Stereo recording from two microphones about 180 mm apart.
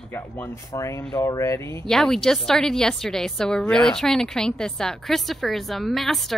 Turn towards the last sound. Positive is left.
turn(degrees=0)  # may be behind; listen again after turning